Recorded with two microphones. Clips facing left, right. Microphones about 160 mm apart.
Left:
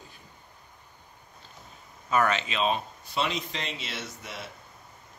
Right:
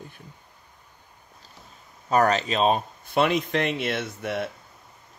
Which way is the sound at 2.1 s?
40° right (ahead or behind).